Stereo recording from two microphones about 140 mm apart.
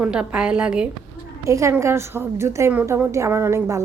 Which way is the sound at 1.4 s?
20° right (ahead or behind).